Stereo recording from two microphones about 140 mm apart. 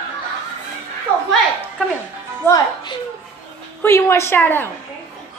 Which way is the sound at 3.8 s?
20° left (ahead or behind).